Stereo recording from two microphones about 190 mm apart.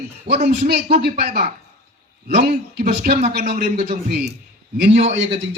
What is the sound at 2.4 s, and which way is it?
Speech, 55° right (ahead or behind).